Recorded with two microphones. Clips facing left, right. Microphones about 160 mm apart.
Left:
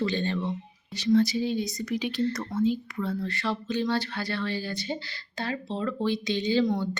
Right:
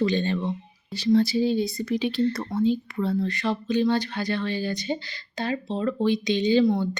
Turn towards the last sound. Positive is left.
turn(degrees=-10)  # may be behind; listen again after turning